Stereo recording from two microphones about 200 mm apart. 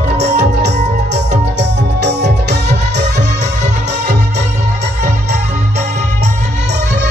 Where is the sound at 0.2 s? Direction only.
55° right (ahead or behind).